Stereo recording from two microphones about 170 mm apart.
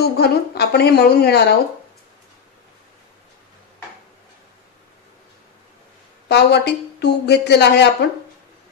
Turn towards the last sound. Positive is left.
turn(degrees=80)